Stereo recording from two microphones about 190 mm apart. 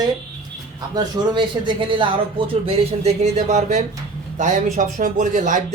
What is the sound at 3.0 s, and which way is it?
Speech, 35° right (ahead or behind).